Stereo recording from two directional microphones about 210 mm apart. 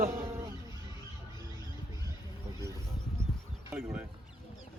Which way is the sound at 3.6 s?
10° right (ahead or behind).